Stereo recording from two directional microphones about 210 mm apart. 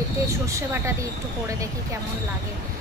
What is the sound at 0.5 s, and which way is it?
Speech, 15° right (ahead or behind).